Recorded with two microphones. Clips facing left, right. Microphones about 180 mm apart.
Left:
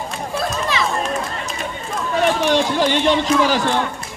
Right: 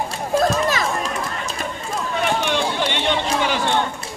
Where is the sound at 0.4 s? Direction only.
45° right (ahead or behind).